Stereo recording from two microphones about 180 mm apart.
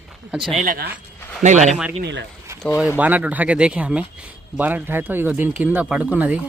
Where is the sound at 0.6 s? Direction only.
50° right (ahead or behind).